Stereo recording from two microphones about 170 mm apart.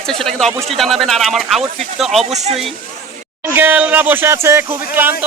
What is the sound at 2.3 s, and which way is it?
Speech, 40° right (ahead or behind).